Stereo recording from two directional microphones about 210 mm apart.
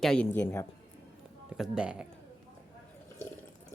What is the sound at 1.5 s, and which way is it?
Speech, 5° right (ahead or behind).